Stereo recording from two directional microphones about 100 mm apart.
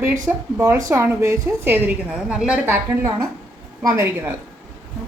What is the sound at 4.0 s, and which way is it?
Speech, 20° right (ahead or behind).